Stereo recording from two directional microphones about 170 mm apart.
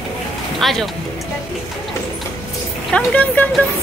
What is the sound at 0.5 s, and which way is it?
Speech, centre (ahead or behind).